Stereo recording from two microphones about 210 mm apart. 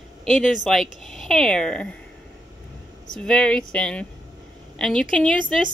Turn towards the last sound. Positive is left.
turn(degrees=5)  # may be behind; listen again after turning